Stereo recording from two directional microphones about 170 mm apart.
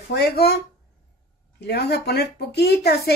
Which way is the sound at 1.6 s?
75° left (ahead or behind).